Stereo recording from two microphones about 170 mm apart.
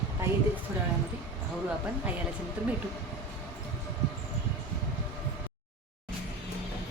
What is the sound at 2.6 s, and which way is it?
Speech, 10° right (ahead or behind).